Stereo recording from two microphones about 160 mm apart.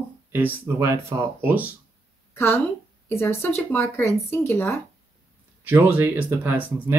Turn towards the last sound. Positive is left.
turn(degrees=-10)  # may be behind; listen again after turning